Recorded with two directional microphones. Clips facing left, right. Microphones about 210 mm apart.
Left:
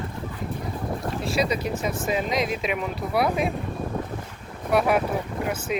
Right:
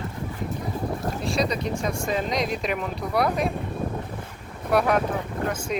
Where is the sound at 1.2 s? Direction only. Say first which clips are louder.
Left 1 dB; 5° left (ahead or behind).